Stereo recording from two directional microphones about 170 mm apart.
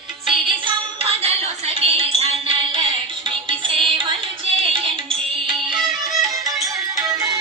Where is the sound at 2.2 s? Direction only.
30° right (ahead or behind).